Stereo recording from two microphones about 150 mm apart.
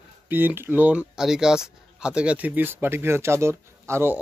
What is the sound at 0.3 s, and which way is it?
Speech, 15° right (ahead or behind).